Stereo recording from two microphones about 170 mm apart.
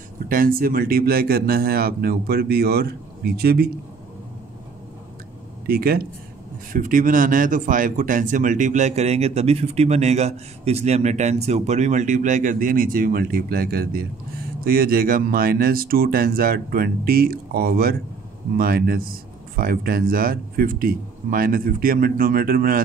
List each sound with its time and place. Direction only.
0.3 s speech: 55° right (ahead or behind)
5.7 s speech: 60° right (ahead or behind)